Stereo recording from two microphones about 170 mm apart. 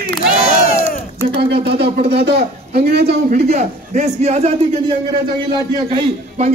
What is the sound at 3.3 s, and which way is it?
A man's voice, 45° right (ahead or behind).